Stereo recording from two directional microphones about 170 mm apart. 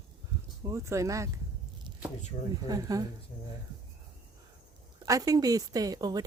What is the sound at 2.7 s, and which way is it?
Speech, 20° right (ahead or behind).